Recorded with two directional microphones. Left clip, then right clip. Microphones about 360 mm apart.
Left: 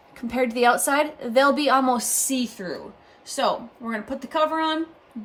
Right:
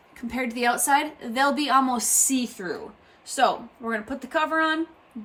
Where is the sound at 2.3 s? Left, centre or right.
Centre.